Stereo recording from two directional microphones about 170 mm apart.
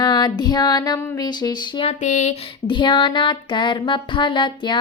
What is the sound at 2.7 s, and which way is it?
Music, 30° left (ahead or behind).